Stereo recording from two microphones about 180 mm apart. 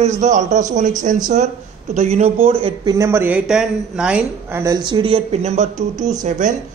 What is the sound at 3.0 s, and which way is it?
A woman's voice, 15° right (ahead or behind).